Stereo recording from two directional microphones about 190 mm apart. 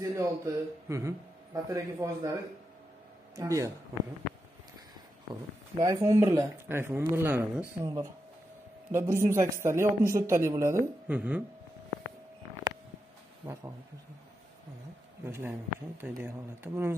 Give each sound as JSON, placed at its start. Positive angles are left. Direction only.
{"t": 0.0, "sound": "speech", "side_deg": -15}
{"t": 3.3, "sound": "speech", "side_deg": -15}
{"t": 5.3, "sound": "speech", "side_deg": -20}
{"t": 13.5, "sound": "speech", "side_deg": -15}
{"t": 15.2, "sound": "speech", "side_deg": -10}